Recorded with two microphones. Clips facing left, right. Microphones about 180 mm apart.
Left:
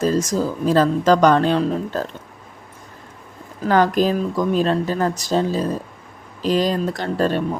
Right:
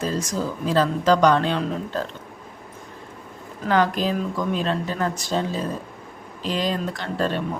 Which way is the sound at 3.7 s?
45° left (ahead or behind).